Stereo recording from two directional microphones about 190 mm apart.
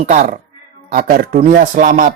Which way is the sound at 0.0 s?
40° right (ahead or behind).